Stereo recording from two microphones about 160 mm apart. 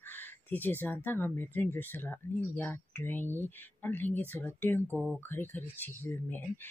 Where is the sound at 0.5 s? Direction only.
10° left (ahead or behind).